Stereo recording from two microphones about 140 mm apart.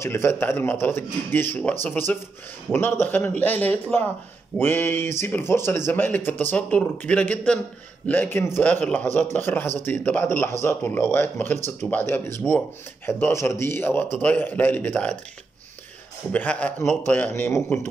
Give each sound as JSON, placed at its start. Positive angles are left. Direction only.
{"t": 0.0, "sound": "speech", "side_deg": 20}
{"t": 16.3, "sound": "speech", "side_deg": 10}